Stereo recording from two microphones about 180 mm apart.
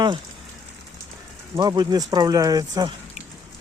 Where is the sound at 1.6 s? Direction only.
25° right (ahead or behind).